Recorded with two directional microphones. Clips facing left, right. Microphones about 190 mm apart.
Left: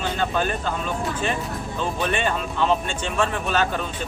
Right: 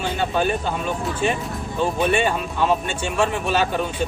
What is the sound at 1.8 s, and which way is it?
A man's voice, 10° right (ahead or behind).